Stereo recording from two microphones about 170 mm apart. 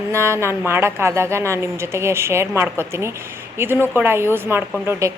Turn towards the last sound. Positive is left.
turn(degrees=-15)  # may be behind; listen again after turning